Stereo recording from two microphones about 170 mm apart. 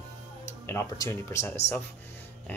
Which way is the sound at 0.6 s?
15° left (ahead or behind).